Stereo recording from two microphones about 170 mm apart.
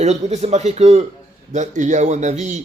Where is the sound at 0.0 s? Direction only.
40° right (ahead or behind).